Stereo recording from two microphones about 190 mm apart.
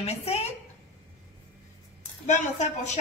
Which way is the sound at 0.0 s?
35° left (ahead or behind).